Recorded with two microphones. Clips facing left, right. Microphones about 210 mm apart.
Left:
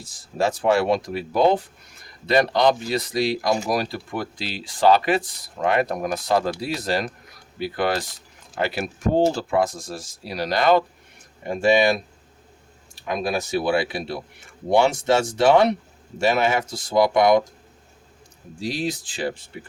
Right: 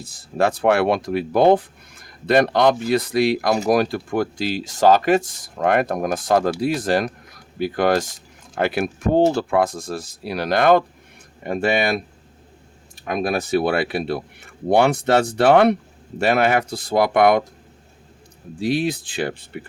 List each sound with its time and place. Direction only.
0.0 s speech: 60° right (ahead or behind)
13.1 s speech: 55° right (ahead or behind)
18.6 s speech: 60° right (ahead or behind)